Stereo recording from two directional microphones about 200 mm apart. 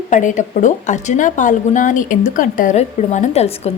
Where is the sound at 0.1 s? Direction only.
40° left (ahead or behind).